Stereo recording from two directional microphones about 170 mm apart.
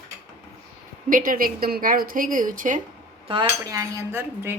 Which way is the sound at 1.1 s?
55° right (ahead or behind).